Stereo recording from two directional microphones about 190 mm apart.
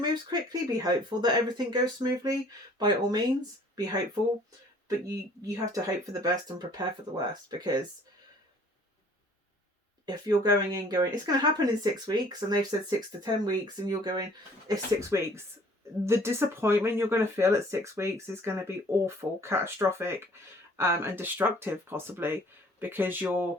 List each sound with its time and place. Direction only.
0.0 s speech: 20° right (ahead or behind)
10.1 s speech: 20° right (ahead or behind)